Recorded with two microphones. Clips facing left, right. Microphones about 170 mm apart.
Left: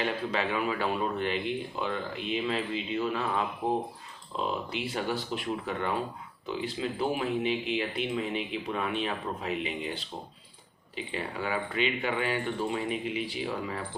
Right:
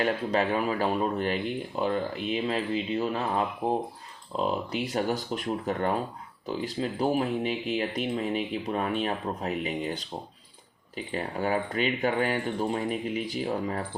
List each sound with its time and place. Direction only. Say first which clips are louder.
0.0 s speech: right 4 dB; 40° right (ahead or behind)